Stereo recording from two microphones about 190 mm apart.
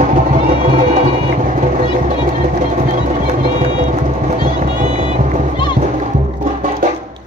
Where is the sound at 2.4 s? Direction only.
40° right (ahead or behind).